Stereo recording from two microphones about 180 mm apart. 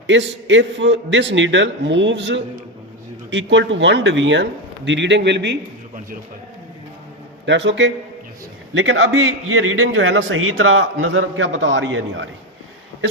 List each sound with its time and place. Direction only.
0.1 s a man's voice: 90° right
4.9 s a man's voice: 75° right (ahead or behind)
7.4 s a man's voice: 85° right